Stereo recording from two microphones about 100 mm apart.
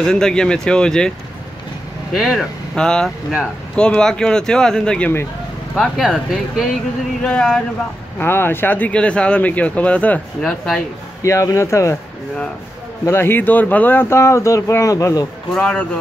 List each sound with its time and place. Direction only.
0.0 s speech: 5° left (ahead or behind)
2.1 s speech: centre (ahead or behind)
5.8 s speech: centre (ahead or behind)
8.2 s speech: 20° left (ahead or behind); by 10.8 s 5° left (ahead or behind)
11.2 s speech: 30° left (ahead or behind)
13.0 s speech: 25° left (ahead or behind)
15.5 s speech: 5° left (ahead or behind)